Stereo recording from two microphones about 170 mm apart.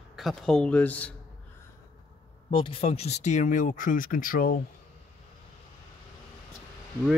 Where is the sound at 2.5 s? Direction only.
30° left (ahead or behind); by 4.6 s 55° left (ahead or behind).